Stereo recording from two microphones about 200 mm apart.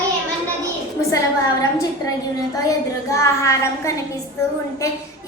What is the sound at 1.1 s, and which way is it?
A woman's voice, 15° left (ahead or behind).